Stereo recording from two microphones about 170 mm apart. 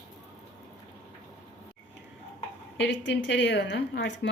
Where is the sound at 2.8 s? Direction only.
90° left.